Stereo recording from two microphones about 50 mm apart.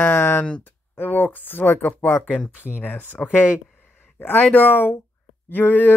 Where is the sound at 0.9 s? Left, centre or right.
Left.